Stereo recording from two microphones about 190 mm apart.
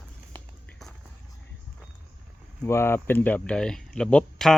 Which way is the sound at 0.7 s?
Centre (ahead or behind).